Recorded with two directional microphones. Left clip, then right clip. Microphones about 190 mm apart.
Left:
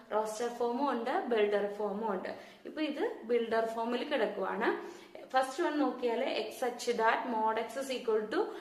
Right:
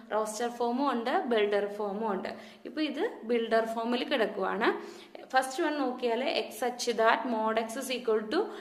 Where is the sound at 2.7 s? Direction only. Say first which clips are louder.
Right 3 dB; 50° right (ahead or behind).